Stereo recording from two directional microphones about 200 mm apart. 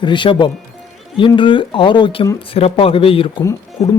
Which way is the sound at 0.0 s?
25° left (ahead or behind).